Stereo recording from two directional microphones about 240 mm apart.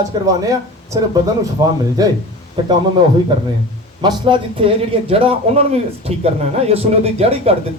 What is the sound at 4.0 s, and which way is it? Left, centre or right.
A man's voice, centre.